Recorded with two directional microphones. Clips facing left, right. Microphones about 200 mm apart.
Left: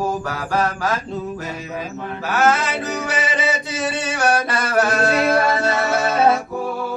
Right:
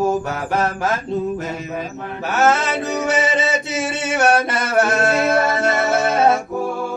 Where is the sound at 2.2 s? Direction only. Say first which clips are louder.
Right 1 dB; 25° right (ahead or behind).